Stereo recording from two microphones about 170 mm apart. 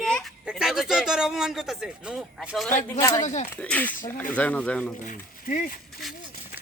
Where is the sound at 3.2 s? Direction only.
45° left (ahead or behind).